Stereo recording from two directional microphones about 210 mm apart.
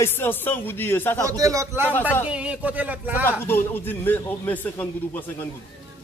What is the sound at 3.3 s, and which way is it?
A man's voice, 10° left (ahead or behind).